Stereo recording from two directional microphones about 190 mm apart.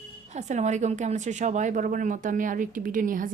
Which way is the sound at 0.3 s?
35° right (ahead or behind).